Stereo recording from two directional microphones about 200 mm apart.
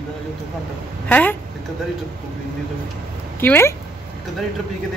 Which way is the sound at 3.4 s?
10° left (ahead or behind).